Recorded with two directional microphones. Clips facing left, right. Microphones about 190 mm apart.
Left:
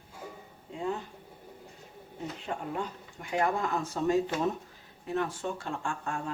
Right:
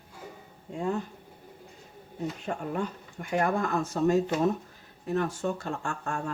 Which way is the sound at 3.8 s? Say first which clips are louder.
Right 4 dB; 45° right (ahead or behind).